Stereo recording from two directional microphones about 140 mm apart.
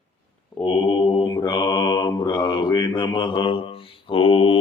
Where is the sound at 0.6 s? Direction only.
35° left (ahead or behind).